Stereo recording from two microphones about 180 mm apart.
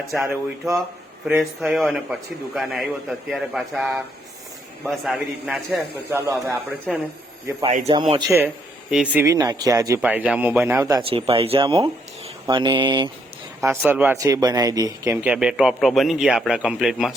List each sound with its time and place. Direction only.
0.1 s a man's voice: centre (ahead or behind)
6.1 s a man's voice: 15° right (ahead or behind)
6.9 s a man's voice: centre (ahead or behind)
7.9 s speech: 25° right (ahead or behind)
8.3 s a man's voice: 15° right (ahead or behind)
9.2 s speech: 20° right (ahead or behind)
10.0 s a man's voice: 10° right (ahead or behind)
11.1 s speech: 30° right (ahead or behind)
13.7 s a man's voice: 10° right (ahead or behind)